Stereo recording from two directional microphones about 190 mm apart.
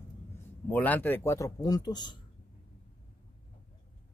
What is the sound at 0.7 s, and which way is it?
A man's voice, 10° left (ahead or behind).